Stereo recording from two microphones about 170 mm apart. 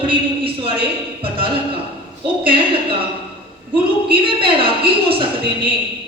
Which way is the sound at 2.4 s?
30° right (ahead or behind).